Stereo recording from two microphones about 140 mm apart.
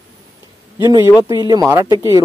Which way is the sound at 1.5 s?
20° right (ahead or behind).